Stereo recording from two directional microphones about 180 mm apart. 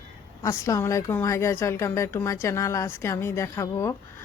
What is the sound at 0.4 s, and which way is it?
Speech, 15° left (ahead or behind).